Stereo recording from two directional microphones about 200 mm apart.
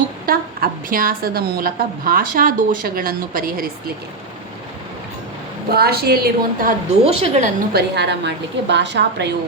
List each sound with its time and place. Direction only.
0.3 s a woman's voice: 45° right (ahead or behind)
5.6 s a woman's voice: 50° right (ahead or behind)
7.0 s a woman's voice: 35° right (ahead or behind)
7.7 s a woman's voice: 55° right (ahead or behind)